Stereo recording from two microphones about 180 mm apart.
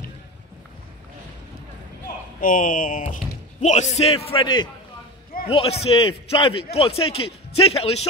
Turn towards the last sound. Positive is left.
turn(degrees=35)  # may be behind; listen again after turning